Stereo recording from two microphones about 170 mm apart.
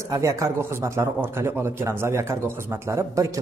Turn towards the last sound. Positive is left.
turn(degrees=-15)  # may be behind; listen again after turning